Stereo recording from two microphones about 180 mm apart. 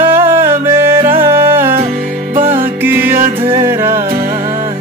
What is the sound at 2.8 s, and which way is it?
Music, 10° right (ahead or behind).